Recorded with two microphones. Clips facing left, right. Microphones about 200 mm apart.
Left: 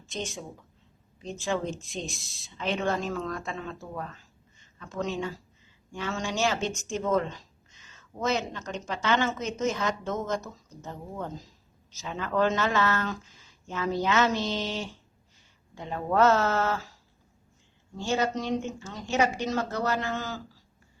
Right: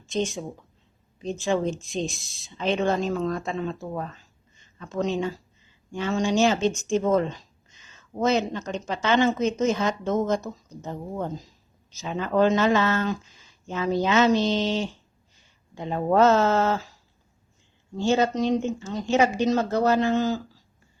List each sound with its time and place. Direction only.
1.2 s a woman's voice: 20° right (ahead or behind)
2.6 s a woman's voice: 20° right (ahead or behind)
17.9 s a woman's voice: 25° right (ahead or behind)